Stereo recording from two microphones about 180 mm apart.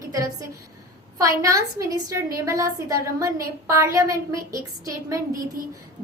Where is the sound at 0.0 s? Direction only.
20° right (ahead or behind).